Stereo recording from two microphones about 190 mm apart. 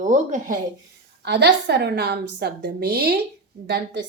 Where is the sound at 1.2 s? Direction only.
60° right (ahead or behind).